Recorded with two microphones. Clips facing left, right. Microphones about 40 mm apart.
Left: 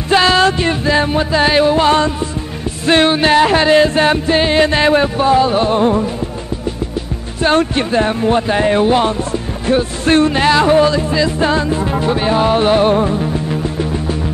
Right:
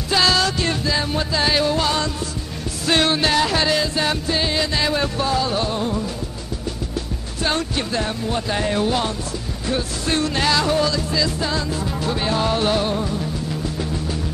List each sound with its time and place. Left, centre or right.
0.1 s music: left
5.0 s music: left
7.4 s music: left
9.7 s music: left